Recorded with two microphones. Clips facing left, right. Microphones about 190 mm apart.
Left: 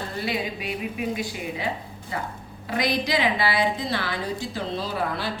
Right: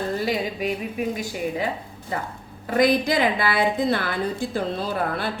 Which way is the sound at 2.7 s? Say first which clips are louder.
Right 5 dB; 50° right (ahead or behind).